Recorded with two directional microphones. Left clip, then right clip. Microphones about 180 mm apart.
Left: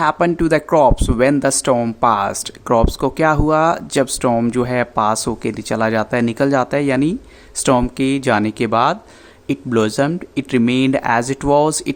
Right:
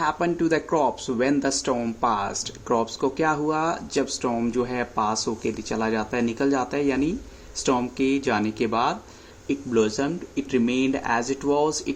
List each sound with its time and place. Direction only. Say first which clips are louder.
0.0 s speech: left 8 dB; 40° left (ahead or behind)